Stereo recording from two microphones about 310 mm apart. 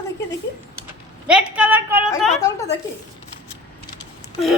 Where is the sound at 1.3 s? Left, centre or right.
Centre.